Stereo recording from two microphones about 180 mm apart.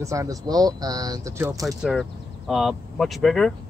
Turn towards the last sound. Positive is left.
turn(degrees=0)  # may be behind; listen again after turning